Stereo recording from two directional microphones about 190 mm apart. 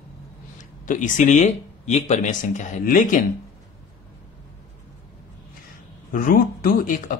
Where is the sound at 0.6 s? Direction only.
40° left (ahead or behind).